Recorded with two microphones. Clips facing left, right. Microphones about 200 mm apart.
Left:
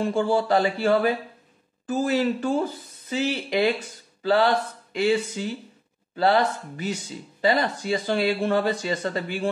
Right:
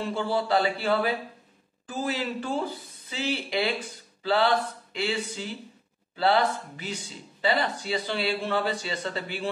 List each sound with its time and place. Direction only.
0.0 s speech: 45° left (ahead or behind)
4.2 s a sound: 45° left (ahead or behind)
6.1 s speech: 45° left (ahead or behind)